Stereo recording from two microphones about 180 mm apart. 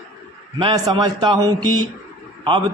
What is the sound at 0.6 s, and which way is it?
Speech, 25° right (ahead or behind).